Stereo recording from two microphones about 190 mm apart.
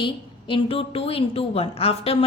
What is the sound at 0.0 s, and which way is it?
A woman's voice, 25° left (ahead or behind).